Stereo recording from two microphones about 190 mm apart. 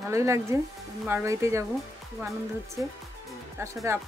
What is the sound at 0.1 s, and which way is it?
Speech, 15° right (ahead or behind).